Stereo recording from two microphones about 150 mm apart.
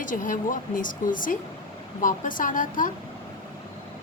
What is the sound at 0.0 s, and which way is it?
A woman's voice, 60° left (ahead or behind).